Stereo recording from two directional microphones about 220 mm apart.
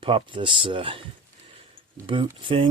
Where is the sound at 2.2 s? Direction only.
25° right (ahead or behind).